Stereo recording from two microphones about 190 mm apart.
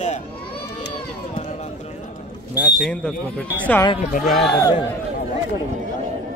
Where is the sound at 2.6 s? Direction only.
Centre (ahead or behind).